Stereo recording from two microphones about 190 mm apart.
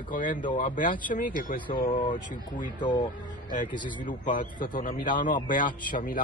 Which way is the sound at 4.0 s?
45° left (ahead or behind).